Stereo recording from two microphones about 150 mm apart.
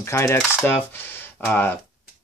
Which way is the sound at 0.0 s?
20° left (ahead or behind).